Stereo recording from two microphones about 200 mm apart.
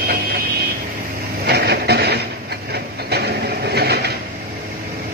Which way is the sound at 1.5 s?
55° right (ahead or behind).